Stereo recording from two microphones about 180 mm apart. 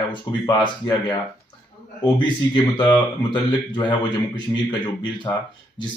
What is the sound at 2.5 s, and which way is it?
Speech, 25° left (ahead or behind).